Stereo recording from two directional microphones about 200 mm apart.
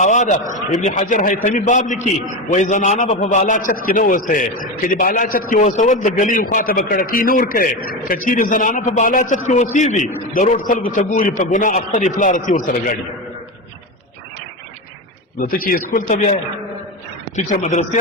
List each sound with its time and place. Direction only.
0.0 s a man's voice: 35° left (ahead or behind)
15.4 s a man's voice: 45° left (ahead or behind)
17.5 s a man's voice: 35° left (ahead or behind)